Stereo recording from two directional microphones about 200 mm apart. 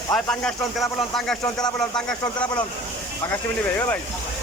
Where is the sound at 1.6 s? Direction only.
20° left (ahead or behind).